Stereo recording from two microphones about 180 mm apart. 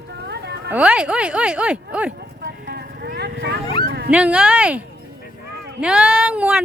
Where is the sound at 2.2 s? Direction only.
60° right (ahead or behind).